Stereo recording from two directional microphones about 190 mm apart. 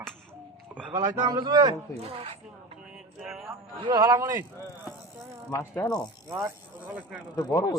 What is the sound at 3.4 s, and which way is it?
A man's voice, 20° right (ahead or behind).